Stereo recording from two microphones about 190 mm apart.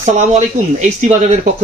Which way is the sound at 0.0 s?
40° right (ahead or behind).